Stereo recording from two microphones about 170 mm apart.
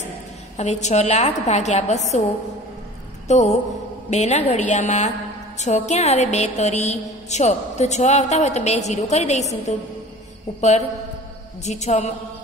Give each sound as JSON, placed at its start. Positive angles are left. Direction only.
{"t": 0.6, "sound": "a woman's voice", "side_deg": 40}
{"t": 3.3, "sound": "a woman's voice", "side_deg": 45}
{"t": 11.6, "sound": "a woman's voice", "side_deg": 40}